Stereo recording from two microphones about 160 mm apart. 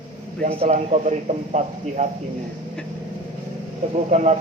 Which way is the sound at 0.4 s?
40° right (ahead or behind).